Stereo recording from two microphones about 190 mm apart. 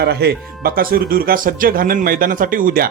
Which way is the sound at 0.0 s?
60° right (ahead or behind).